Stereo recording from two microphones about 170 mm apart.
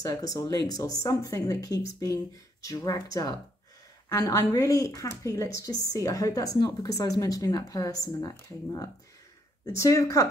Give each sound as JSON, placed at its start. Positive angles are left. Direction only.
{"t": 0.0, "sound": "a woman's voice", "side_deg": 20}